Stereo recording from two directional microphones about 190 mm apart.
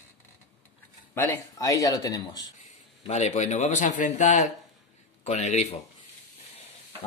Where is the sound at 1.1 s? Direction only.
10° left (ahead or behind).